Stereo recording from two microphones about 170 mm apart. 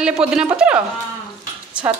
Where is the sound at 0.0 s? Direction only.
5° right (ahead or behind).